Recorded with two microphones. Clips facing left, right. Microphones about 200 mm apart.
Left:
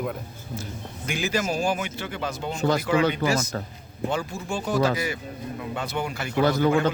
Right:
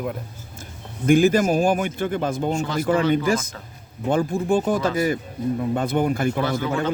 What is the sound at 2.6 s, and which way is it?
Speech, 40° left (ahead or behind).